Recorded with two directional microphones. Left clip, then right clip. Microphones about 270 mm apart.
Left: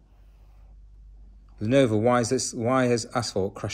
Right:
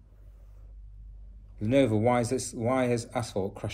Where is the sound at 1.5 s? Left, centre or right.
Centre.